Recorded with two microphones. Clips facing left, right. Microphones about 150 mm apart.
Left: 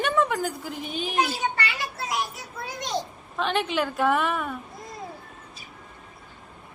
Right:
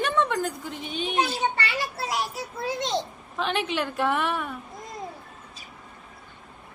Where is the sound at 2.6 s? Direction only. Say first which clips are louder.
Right 5 dB; 25° right (ahead or behind).